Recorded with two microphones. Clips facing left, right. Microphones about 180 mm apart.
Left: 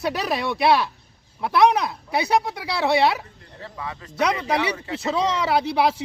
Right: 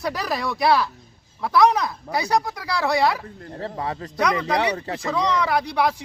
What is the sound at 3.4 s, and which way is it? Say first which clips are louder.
Speech: right 6 dB; 45° right (ahead or behind).